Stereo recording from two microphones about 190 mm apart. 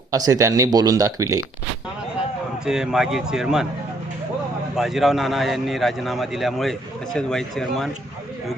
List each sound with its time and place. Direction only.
0.1 s speech: 20° right (ahead or behind)
2.6 s a man's voice: centre (ahead or behind)
4.8 s a man's voice: centre (ahead or behind)